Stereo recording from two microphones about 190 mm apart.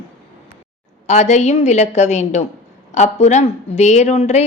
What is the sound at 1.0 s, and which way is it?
A woman's voice, 40° left (ahead or behind).